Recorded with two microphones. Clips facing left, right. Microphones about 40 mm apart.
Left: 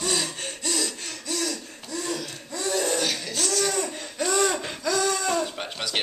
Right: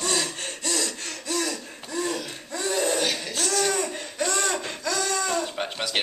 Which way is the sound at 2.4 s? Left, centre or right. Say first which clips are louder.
Right 1 dB; centre.